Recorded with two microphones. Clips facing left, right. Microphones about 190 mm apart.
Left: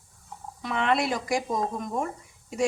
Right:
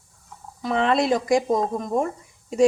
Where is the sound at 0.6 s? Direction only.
35° right (ahead or behind).